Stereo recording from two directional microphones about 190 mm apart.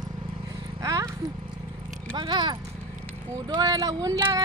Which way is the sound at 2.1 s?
25° right (ahead or behind).